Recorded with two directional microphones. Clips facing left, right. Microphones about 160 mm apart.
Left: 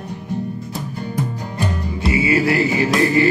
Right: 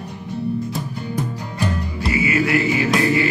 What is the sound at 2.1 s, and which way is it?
Music, 30° left (ahead or behind).